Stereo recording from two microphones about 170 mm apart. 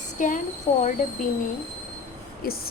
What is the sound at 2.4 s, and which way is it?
Speech, 60° left (ahead or behind).